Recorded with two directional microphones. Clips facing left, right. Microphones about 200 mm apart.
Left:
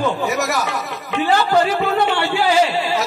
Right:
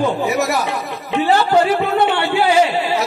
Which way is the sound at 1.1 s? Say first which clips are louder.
Right 2 dB; 25° right (ahead or behind).